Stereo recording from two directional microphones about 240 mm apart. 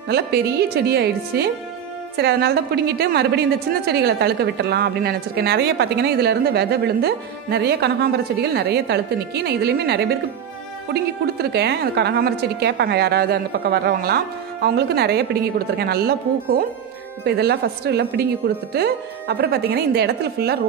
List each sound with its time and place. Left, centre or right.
0.1 s a woman's voice: right